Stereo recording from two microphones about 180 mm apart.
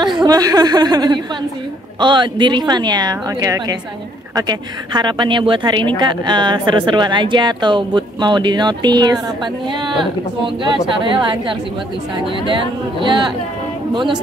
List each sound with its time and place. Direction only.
0.0 s a woman's voice: 25° right (ahead or behind)
13.0 s speech: 25° right (ahead or behind)